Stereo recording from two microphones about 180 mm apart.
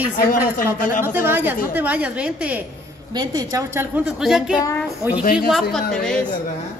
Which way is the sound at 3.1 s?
20° right (ahead or behind).